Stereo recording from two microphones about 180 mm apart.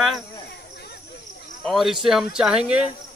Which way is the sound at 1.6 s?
Centre (ahead or behind).